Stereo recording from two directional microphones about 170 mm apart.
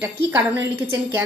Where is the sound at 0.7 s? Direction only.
10° right (ahead or behind).